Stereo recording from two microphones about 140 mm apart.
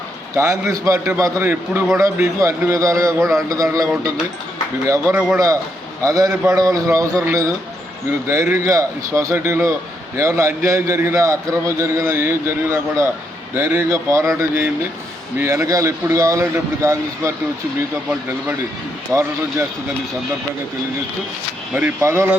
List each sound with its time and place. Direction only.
0.3 s a man's voice: 20° right (ahead or behind)
4.9 s a man's voice: 15° right (ahead or behind)
19.1 s a man's voice: 20° right (ahead or behind)
21.7 s speech: 10° right (ahead or behind)